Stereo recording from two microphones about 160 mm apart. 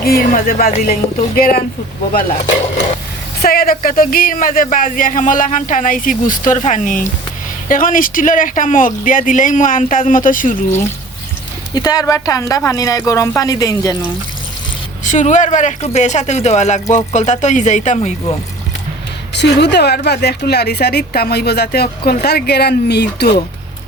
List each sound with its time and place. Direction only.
0.0 s speech: 65° left (ahead or behind)
3.4 s speech: 70° left (ahead or behind)
11.7 s speech: 25° left (ahead or behind)
15.0 s speech: 50° left (ahead or behind)
19.3 s a woman's voice: 90° left